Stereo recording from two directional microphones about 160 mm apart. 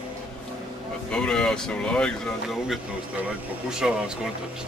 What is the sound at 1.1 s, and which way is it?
Speech, 5° left (ahead or behind).